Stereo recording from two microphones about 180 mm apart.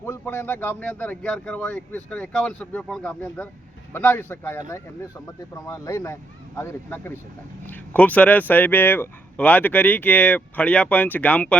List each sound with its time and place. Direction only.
0.0 s speech: 15° left (ahead or behind)
5.6 s speech: 15° left (ahead or behind)